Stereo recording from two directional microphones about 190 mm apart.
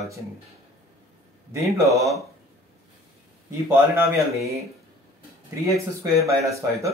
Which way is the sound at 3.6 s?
10° right (ahead or behind).